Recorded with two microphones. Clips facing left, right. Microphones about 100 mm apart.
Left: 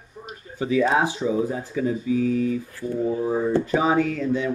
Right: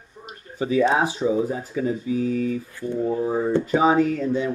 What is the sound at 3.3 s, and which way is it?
Speech, 15° right (ahead or behind).